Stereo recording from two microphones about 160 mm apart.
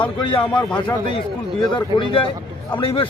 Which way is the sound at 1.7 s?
30° left (ahead or behind).